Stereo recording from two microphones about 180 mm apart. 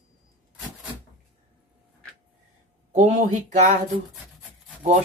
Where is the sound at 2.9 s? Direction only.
40° right (ahead or behind).